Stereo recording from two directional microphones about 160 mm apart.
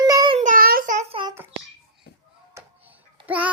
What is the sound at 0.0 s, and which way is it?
Child singing, 25° right (ahead or behind).